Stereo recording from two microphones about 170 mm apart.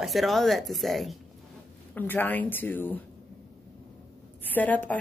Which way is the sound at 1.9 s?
10° left (ahead or behind).